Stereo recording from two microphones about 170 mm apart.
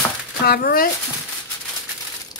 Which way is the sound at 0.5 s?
65° left (ahead or behind).